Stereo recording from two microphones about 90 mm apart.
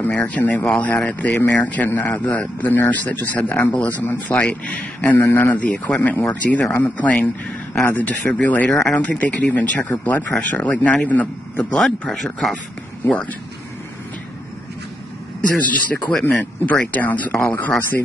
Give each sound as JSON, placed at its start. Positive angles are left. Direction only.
{"t": 0.0, "sound": "speech", "side_deg": 15}
{"t": 11.7, "sound": "speech", "side_deg": 5}
{"t": 13.0, "sound": "speech", "side_deg": 15}
{"t": 16.1, "sound": "speech", "side_deg": 15}